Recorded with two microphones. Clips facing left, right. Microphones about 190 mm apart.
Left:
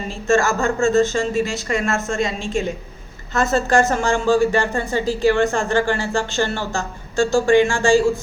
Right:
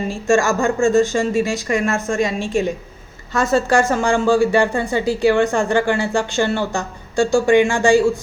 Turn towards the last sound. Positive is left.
turn(degrees=-15)  # may be behind; listen again after turning